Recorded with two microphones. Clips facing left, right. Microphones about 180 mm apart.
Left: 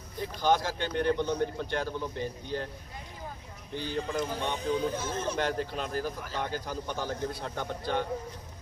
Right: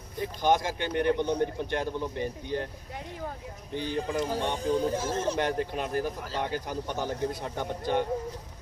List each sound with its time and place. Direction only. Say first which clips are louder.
0.2 s speech: right 1 dB; 15° right (ahead or behind)
3.9 s speech: right 1 dB; 5° right (ahead or behind)
4.6 s speech: right 3 dB; 40° right (ahead or behind)
5.4 s speech: right 2 dB; 15° right (ahead or behind)